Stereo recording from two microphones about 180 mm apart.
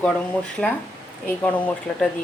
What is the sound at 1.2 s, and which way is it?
Speech, 10° left (ahead or behind).